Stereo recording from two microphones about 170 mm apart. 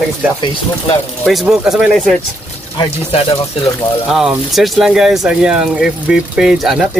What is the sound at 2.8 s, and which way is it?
Speech, 35° left (ahead or behind).